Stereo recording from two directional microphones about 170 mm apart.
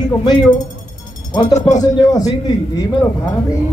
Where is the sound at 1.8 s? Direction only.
20° left (ahead or behind).